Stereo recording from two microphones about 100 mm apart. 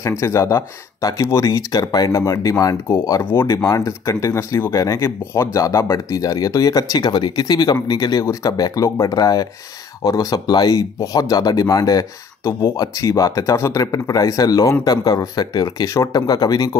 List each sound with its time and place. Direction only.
0.2 s speech: 30° left (ahead or behind)